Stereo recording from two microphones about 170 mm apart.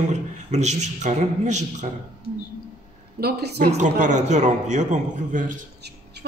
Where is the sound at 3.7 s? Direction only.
45° right (ahead or behind).